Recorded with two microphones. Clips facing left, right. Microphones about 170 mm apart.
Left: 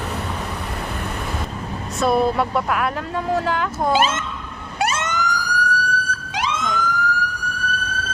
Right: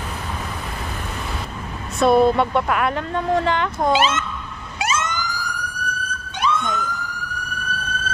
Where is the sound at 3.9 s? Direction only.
50° left (ahead or behind).